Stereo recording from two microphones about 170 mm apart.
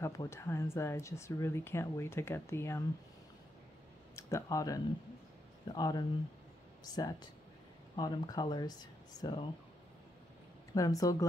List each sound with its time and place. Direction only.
0.0 s speech: 20° left (ahead or behind)
4.1 s speech: 15° left (ahead or behind)
10.7 s speech: 20° left (ahead or behind)